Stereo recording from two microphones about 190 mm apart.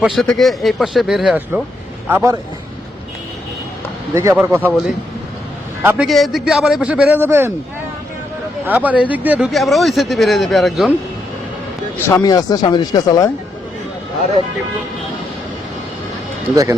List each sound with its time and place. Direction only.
0.0 s speech: centre (ahead or behind)
2.0 s a man's voice: 15° right (ahead or behind)
4.1 s a man's voice: 15° right (ahead or behind)
5.8 s a man's voice: 10° right (ahead or behind)
6.1 s speech: centre (ahead or behind)
8.6 s speech: 10° right (ahead or behind)
11.9 s speech: 15° left (ahead or behind)